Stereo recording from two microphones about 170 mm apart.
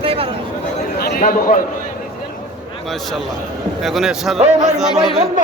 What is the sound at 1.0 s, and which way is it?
Speech, 55° left (ahead or behind).